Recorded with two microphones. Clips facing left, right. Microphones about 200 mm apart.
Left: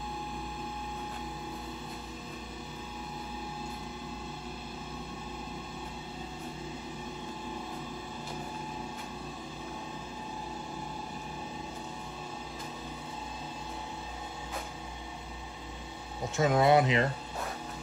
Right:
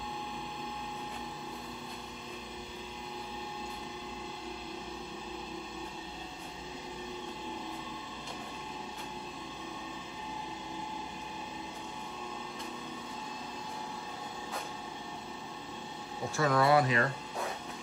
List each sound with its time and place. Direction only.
16.3 s speech: 20° left (ahead or behind)